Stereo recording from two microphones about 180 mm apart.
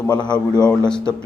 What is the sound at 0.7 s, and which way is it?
Speech, 5° left (ahead or behind).